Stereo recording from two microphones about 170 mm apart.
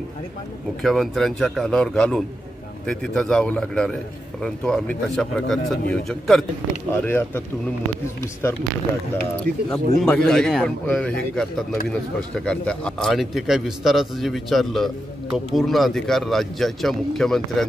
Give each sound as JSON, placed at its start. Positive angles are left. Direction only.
{"t": 0.8, "sound": "speech", "side_deg": 0}
{"t": 6.9, "sound": "speech", "side_deg": 15}